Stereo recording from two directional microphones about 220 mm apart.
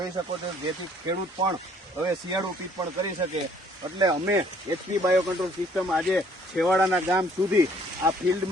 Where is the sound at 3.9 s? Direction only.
15° right (ahead or behind).